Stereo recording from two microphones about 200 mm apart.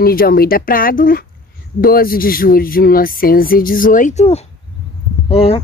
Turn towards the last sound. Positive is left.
turn(degrees=30)  # may be behind; listen again after turning